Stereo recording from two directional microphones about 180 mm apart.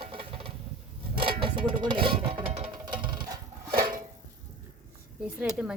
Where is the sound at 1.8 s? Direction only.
25° right (ahead or behind).